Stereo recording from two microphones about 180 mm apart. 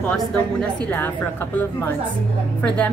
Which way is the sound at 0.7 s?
10° left (ahead or behind).